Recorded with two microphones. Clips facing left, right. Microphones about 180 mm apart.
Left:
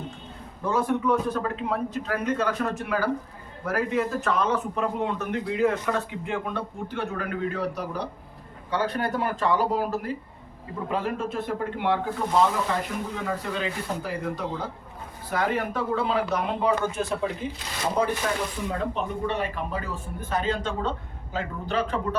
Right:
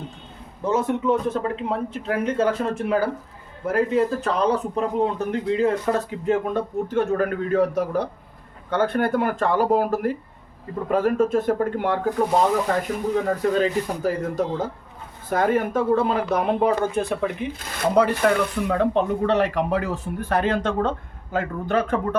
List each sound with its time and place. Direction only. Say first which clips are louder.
0.6 s a man's voice: right 3 dB; 20° right (ahead or behind); by 22.0 s 50° right (ahead or behind)